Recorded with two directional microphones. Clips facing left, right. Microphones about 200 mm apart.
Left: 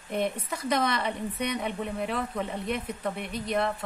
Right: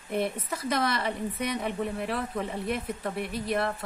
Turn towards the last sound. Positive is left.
turn(degrees=-5)  # may be behind; listen again after turning